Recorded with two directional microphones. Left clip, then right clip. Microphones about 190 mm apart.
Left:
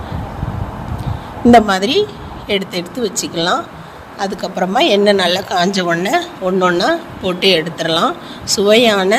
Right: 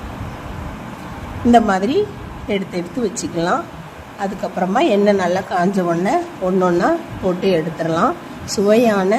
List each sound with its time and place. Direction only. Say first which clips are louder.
1.5 s a woman's voice: left 4 dB; 35° left (ahead or behind)